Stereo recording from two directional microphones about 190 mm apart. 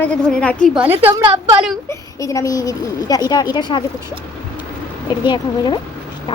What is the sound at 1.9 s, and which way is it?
Speech, 15° left (ahead or behind).